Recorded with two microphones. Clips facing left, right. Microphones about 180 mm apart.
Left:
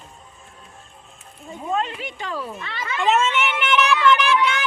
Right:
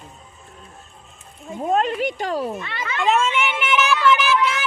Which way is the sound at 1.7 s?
50° right (ahead or behind).